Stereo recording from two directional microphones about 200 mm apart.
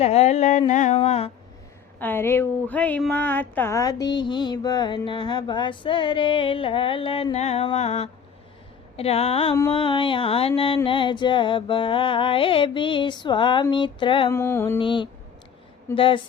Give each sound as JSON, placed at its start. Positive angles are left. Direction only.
{"t": 0.0, "sound": "mantra", "side_deg": 30}
{"t": 2.0, "sound": "speech", "side_deg": 10}
{"t": 14.3, "sound": "mantra", "side_deg": 10}
{"t": 14.8, "sound": "speech", "side_deg": 25}